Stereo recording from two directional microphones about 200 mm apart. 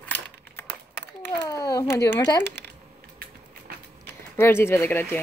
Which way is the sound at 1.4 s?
15° left (ahead or behind).